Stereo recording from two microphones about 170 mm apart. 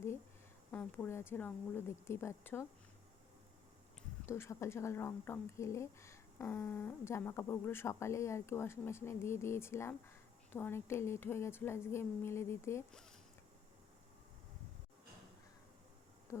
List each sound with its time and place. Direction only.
0.7 s a woman's voice: 10° left (ahead or behind)
4.3 s a woman's voice: 15° left (ahead or behind)
12.9 s speech: 5° left (ahead or behind)